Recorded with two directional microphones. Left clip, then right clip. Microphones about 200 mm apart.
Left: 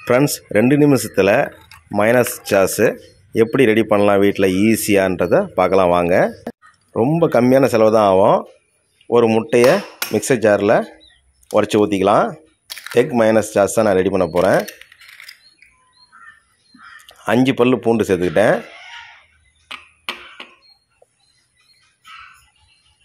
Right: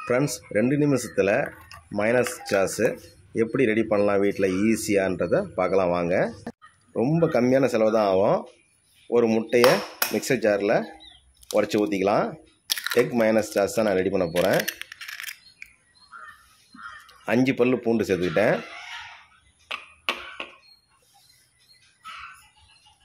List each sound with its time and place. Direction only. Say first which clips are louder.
0.0 s speech: left 9 dB; 45° left (ahead or behind)
17.1 s speech: left 7 dB; 35° left (ahead or behind)
19.7 s tick-tock: even; centre (ahead or behind)